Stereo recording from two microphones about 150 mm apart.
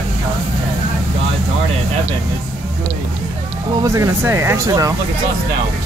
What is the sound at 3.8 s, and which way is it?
Speech, 20° right (ahead or behind).